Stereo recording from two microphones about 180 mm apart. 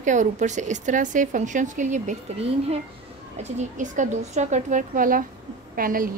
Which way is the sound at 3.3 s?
40° right (ahead or behind).